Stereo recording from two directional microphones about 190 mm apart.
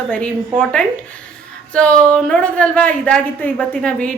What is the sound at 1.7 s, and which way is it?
A woman's voice, 5° left (ahead or behind).